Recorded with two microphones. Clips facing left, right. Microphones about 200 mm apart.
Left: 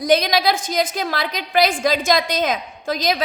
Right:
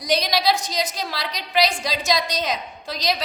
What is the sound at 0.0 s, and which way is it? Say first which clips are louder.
A woman's voice: left 5 dB; 50° left (ahead or behind).